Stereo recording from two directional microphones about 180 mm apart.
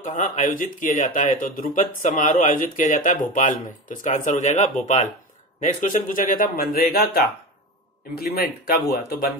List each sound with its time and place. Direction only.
0.0 s speech: 45° left (ahead or behind)